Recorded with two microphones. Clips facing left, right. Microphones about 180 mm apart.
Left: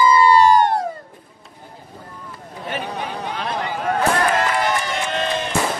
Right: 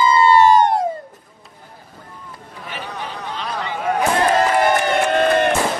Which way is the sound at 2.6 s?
30° left (ahead or behind).